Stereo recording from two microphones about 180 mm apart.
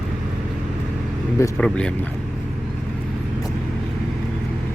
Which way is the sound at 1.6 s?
5° left (ahead or behind).